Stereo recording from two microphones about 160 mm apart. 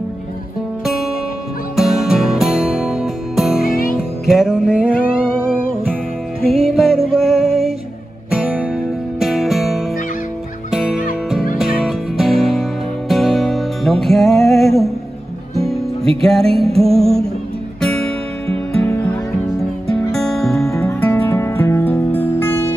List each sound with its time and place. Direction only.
0.8 s music: centre (ahead or behind)
3.6 s music: 65° left (ahead or behind)
4.3 s a sound: centre (ahead or behind)
6.4 s music: centre (ahead or behind)
20.1 s music: centre (ahead or behind)